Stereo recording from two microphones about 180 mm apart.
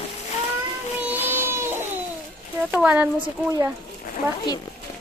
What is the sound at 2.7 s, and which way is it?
Speech, 5° right (ahead or behind).